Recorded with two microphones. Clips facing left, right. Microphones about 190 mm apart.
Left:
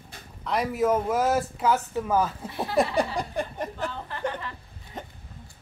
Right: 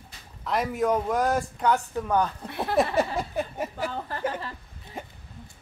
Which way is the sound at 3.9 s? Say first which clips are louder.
Right 3 dB; 40° right (ahead or behind).